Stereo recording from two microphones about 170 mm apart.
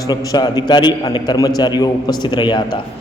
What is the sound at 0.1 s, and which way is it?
A man's voice, 25° left (ahead or behind).